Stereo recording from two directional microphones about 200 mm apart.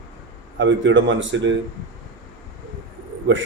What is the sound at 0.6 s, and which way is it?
Speech, 65° right (ahead or behind).